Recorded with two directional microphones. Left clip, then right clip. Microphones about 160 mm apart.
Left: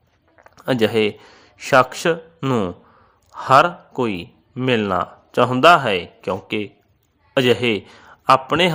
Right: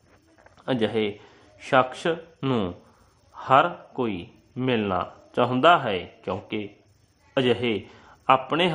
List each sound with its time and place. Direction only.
0.5 s speech: 25° left (ahead or behind)
2.4 s speech: 15° left (ahead or behind)
3.3 s a man's voice: 25° left (ahead or behind)